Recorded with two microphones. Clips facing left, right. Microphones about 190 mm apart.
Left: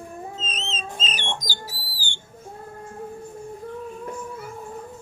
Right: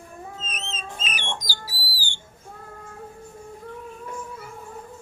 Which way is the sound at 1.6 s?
10° right (ahead or behind).